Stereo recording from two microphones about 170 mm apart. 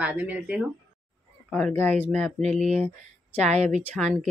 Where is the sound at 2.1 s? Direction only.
45° right (ahead or behind).